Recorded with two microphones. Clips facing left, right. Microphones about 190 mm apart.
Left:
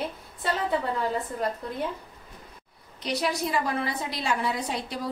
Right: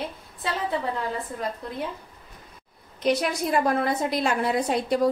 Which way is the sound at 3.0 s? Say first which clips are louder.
Right 4 dB; 55° right (ahead or behind).